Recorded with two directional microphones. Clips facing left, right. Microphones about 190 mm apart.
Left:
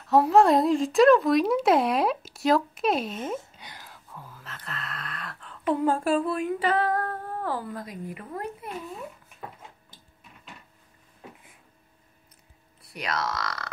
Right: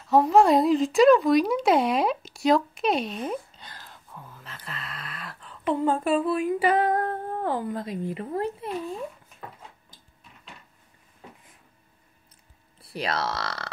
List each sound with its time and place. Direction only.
0.0 s speech: centre (ahead or behind)
3.5 s a sound: 15° left (ahead or behind)
5.8 s female singing: centre (ahead or behind); by 9.0 s 25° right (ahead or behind)
12.8 s female singing: 30° right (ahead or behind)